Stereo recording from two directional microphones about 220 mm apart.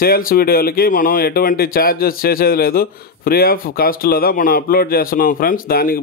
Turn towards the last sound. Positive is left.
turn(degrees=40)  # may be behind; listen again after turning